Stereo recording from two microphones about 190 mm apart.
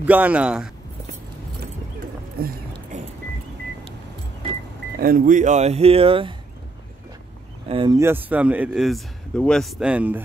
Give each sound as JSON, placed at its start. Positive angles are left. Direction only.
{"t": 0.0, "sound": "speech", "side_deg": -10}
{"t": 2.3, "sound": "a sound", "side_deg": -50}
{"t": 4.9, "sound": "speech", "side_deg": -50}
{"t": 7.6, "sound": "speech", "side_deg": -25}
{"t": 8.0, "sound": "speech", "side_deg": -10}